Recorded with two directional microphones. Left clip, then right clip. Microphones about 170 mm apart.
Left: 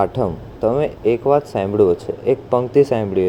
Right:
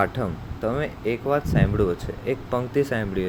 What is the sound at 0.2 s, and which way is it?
Speech, 20° right (ahead or behind).